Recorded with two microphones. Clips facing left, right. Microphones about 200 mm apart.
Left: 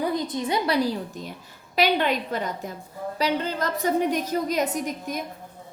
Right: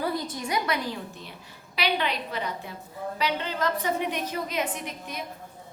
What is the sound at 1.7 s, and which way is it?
A woman's voice, 45° left (ahead or behind).